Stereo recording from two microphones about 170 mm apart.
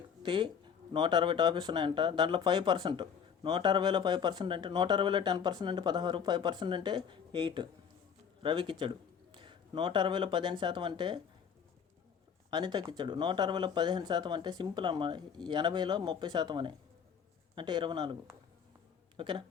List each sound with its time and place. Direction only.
0.2 s a man's voice: 30° right (ahead or behind)
12.5 s speech: 25° right (ahead or behind)